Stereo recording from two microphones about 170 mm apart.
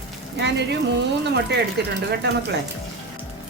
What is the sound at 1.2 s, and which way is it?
Speech, 85° right.